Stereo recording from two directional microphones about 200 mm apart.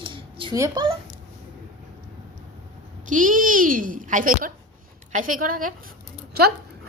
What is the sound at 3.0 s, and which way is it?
A woman's voice, 40° right (ahead or behind).